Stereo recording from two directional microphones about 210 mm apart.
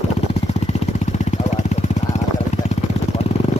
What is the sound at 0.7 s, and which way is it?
Vehicle, 35° left (ahead or behind).